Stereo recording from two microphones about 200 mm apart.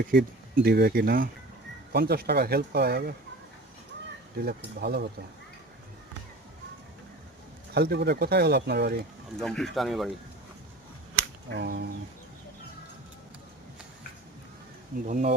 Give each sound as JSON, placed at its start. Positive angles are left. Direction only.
{"t": 0.0, "sound": "speech", "side_deg": -50}
{"t": 4.4, "sound": "speech", "side_deg": -55}
{"t": 7.7, "sound": "speech", "side_deg": -55}
{"t": 9.4, "sound": "speech", "side_deg": 0}
{"t": 11.5, "sound": "speech", "side_deg": -55}
{"t": 15.0, "sound": "speech", "side_deg": -40}